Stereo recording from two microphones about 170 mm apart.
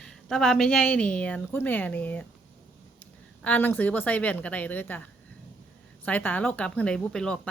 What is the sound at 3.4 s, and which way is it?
A woman's voice, 10° left (ahead or behind).